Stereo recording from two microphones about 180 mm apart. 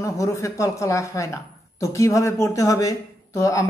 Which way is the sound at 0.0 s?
15° left (ahead or behind).